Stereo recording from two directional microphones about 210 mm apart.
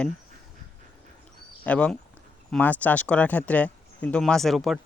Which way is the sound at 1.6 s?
5° left (ahead or behind).